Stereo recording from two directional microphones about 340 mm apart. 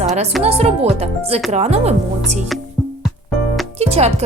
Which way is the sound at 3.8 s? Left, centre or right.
Centre.